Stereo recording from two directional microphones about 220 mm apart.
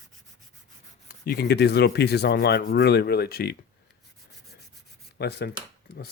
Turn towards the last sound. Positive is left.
turn(degrees=50)  # may be behind; listen again after turning